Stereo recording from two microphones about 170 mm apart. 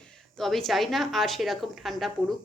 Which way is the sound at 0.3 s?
Centre (ahead or behind).